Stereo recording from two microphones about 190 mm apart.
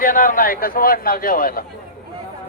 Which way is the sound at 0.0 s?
45° left (ahead or behind).